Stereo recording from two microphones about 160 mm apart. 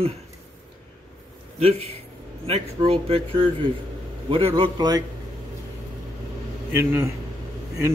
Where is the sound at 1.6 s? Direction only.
40° right (ahead or behind).